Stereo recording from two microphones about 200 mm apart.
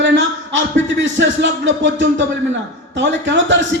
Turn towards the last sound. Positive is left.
turn(degrees=-65)  # may be behind; listen again after turning